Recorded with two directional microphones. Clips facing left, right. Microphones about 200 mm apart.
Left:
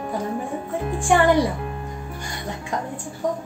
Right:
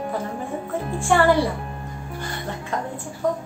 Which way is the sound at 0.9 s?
15° left (ahead or behind).